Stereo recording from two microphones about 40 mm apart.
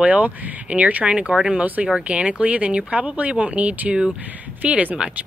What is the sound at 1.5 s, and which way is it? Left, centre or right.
Speech, right.